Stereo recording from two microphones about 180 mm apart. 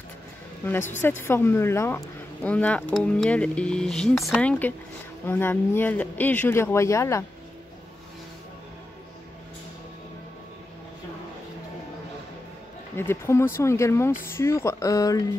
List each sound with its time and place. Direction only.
0.7 s speech: 10° left (ahead or behind)
12.9 s speech: 15° left (ahead or behind)